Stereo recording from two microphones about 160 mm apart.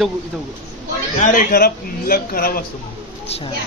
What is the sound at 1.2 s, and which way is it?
A man's voice, 65° left (ahead or behind).